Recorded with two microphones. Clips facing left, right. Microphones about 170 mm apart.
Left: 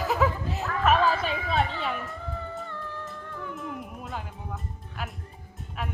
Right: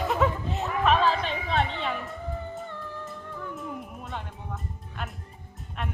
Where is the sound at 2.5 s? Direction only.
20° right (ahead or behind).